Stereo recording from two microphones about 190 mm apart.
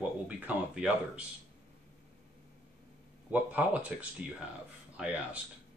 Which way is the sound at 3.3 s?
5° right (ahead or behind).